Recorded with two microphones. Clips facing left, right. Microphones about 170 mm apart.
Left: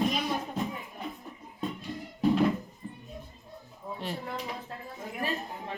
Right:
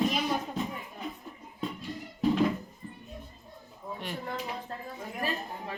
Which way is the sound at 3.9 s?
30° left (ahead or behind).